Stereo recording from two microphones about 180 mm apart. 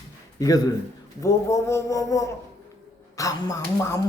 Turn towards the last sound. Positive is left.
turn(degrees=20)  # may be behind; listen again after turning